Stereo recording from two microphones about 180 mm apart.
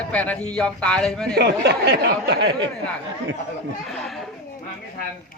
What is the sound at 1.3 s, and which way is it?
Speech, 70° right (ahead or behind).